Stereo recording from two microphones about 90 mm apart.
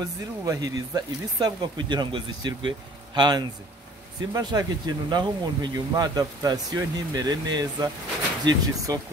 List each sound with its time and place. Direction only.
0.0 s speech: 45° right (ahead or behind); by 2.7 s 65° right (ahead or behind)
3.2 s speech: 50° right (ahead or behind)